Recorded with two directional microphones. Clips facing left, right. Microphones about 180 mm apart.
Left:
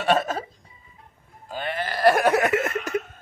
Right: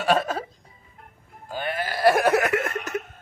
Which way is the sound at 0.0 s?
Centre (ahead or behind).